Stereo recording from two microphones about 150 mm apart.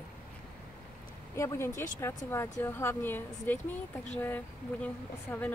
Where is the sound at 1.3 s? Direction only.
20° left (ahead or behind).